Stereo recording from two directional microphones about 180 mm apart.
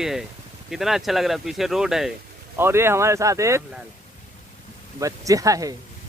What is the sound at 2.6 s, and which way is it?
Speech, 15° right (ahead or behind).